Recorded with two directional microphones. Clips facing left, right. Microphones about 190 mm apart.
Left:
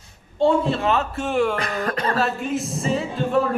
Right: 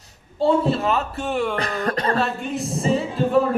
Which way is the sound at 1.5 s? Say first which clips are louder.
Right 1 dB; 35° right (ahead or behind).